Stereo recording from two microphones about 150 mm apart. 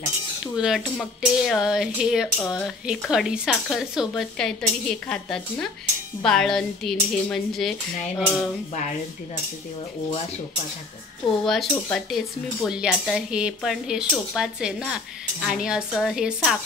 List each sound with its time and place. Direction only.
0.6 s speech: centre (ahead or behind)
11.4 s speech: centre (ahead or behind)